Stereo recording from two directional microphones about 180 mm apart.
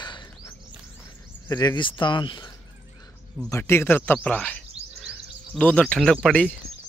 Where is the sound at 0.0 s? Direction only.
25° left (ahead or behind).